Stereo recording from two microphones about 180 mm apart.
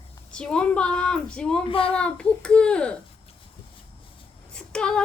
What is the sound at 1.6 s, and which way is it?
Speech, 30° left (ahead or behind).